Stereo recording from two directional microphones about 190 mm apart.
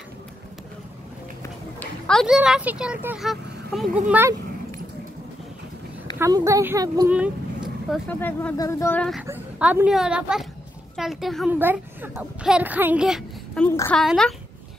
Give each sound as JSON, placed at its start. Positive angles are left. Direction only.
{"t": 1.4, "sound": "speech", "side_deg": 5}
{"t": 4.1, "sound": "speech", "side_deg": -10}
{"t": 6.1, "sound": "speech", "side_deg": -15}
{"t": 7.1, "sound": "vehicle", "side_deg": -5}
{"t": 8.1, "sound": "speech", "side_deg": 10}
{"t": 9.2, "sound": "speech", "side_deg": -10}
{"t": 13.7, "sound": "speech", "side_deg": 10}